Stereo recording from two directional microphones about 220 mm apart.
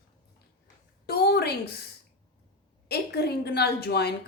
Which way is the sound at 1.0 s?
45° left (ahead or behind).